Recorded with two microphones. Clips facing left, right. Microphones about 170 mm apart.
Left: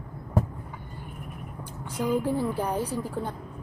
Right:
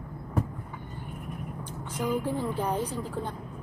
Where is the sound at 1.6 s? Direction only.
10° left (ahead or behind).